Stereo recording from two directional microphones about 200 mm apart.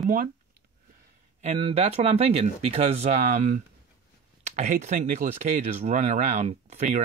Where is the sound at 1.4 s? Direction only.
35° right (ahead or behind).